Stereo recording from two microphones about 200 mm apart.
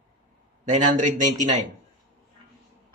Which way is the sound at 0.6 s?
40° right (ahead or behind).